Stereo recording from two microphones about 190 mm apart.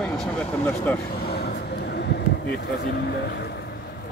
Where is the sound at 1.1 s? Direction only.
55° left (ahead or behind).